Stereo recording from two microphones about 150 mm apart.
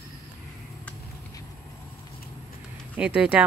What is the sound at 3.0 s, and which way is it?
Speech, 10° right (ahead or behind).